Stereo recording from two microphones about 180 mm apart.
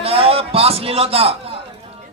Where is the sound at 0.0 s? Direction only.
30° right (ahead or behind).